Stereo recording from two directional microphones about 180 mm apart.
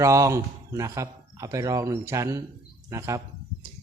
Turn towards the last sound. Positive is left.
turn(degrees=-15)  # may be behind; listen again after turning